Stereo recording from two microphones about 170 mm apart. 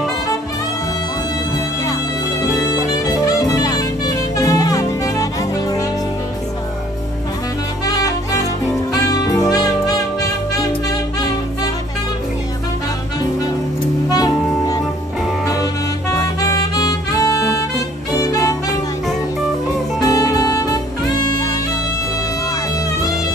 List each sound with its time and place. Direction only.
3.1 s music: 20° left (ahead or behind)
8.9 s music: 20° left (ahead or behind)
14.1 s music: 20° left (ahead or behind)
20.0 s music: 20° left (ahead or behind)